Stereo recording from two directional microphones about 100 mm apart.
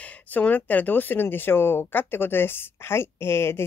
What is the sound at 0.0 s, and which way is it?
Speech, 15° left (ahead or behind).